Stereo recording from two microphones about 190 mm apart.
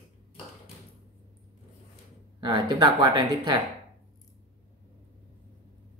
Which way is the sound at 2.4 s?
25° right (ahead or behind).